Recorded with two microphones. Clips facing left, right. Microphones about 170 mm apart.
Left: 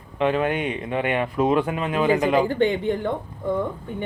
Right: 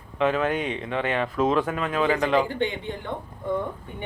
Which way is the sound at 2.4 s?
40° left (ahead or behind).